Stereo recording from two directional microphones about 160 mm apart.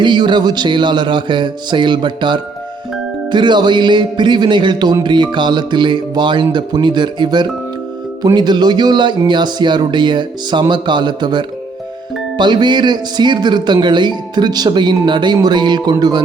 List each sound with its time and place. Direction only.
0.0 s a man's voice: 30° right (ahead or behind)